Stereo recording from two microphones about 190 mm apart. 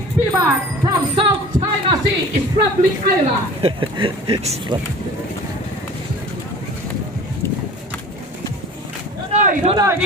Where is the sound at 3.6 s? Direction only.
30° right (ahead or behind).